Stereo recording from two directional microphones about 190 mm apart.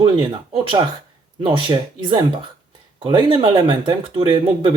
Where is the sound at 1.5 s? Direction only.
25° right (ahead or behind).